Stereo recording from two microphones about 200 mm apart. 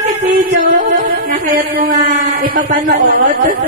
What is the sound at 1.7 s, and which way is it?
A woman's voice, 35° right (ahead or behind).